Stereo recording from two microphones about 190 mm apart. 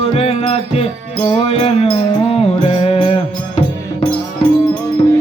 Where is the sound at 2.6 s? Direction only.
30° left (ahead or behind).